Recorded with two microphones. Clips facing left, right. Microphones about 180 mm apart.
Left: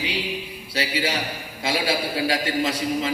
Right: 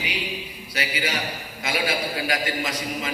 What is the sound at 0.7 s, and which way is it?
A man's voice, 30° left (ahead or behind).